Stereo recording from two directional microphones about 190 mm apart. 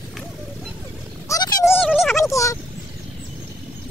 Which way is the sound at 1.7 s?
5° left (ahead or behind).